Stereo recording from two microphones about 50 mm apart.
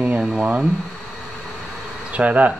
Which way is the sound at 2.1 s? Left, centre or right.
Right.